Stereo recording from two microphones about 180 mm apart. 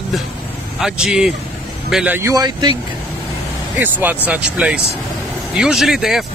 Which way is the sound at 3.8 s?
10° right (ahead or behind).